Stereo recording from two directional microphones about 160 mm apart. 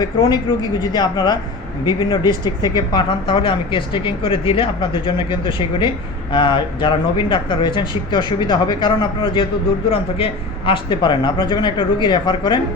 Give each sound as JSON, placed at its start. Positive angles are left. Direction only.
{"t": 0.0, "sound": "speech", "side_deg": 25}
{"t": 10.7, "sound": "speech", "side_deg": 30}